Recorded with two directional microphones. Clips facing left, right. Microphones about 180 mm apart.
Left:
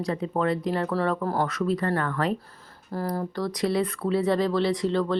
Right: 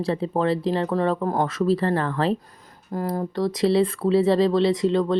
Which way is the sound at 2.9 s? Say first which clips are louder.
Right 3 dB; 15° right (ahead or behind).